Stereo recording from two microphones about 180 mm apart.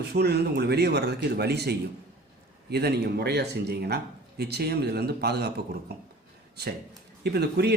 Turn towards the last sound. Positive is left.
turn(degrees=-65)  # may be behind; listen again after turning